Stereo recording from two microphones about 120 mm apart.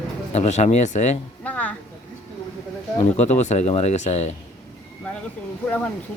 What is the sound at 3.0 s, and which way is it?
Speech, 70° left (ahead or behind).